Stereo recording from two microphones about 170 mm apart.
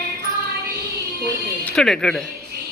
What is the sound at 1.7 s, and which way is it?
Speech, 5° left (ahead or behind).